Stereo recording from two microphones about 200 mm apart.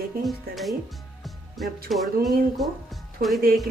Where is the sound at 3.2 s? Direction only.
50° right (ahead or behind).